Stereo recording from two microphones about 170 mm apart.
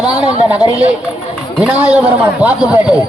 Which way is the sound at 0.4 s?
5° right (ahead or behind).